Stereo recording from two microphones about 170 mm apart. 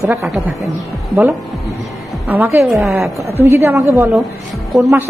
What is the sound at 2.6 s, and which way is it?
Speech, centre (ahead or behind).